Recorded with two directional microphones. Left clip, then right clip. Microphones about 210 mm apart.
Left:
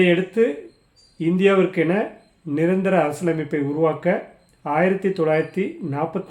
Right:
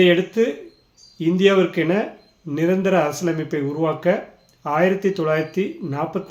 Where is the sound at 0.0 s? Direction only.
5° left (ahead or behind).